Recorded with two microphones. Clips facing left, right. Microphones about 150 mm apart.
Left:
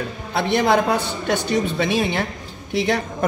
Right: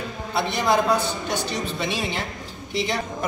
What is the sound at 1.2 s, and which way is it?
A woman's voice, 60° left (ahead or behind).